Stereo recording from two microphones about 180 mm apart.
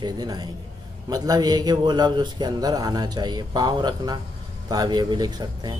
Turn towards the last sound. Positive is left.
turn(degrees=-25)  # may be behind; listen again after turning